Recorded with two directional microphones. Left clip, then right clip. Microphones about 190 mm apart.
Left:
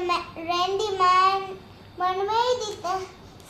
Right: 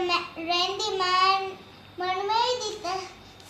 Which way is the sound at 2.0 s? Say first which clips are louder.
Left 2 dB; 20° left (ahead or behind).